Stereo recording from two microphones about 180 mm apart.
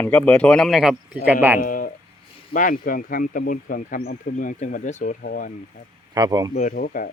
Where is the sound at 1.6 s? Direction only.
50° left (ahead or behind).